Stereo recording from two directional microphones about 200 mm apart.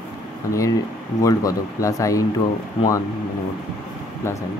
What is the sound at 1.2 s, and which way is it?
Speech, 15° left (ahead or behind).